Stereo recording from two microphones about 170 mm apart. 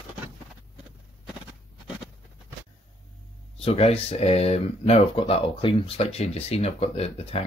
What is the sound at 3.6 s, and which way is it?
Speech, 35° left (ahead or behind).